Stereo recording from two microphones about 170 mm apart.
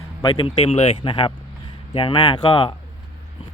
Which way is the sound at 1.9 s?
30° left (ahead or behind).